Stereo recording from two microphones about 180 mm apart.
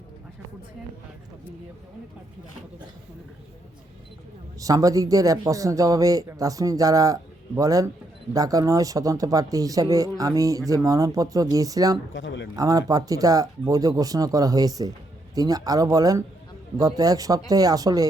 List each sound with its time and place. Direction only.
4.6 s a man's voice: 20° right (ahead or behind)
12.1 s a man's voice: 85° left
12.5 s a man's voice: 20° right (ahead or behind)